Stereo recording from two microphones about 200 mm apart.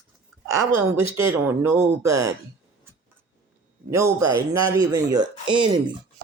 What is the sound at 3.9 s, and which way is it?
Speech, 15° right (ahead or behind).